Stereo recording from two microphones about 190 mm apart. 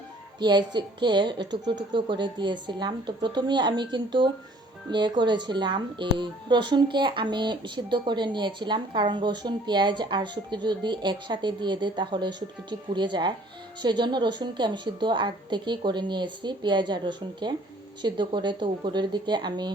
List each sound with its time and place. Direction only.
0.3 s speech: 25° right (ahead or behind)